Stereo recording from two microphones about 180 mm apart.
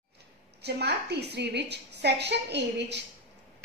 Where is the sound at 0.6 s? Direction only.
65° right (ahead or behind).